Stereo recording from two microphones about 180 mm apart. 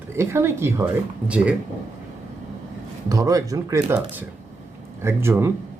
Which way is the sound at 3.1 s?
20° right (ahead or behind).